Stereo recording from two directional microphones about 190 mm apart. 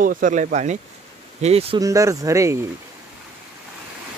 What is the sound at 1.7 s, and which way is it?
Speech, 15° right (ahead or behind).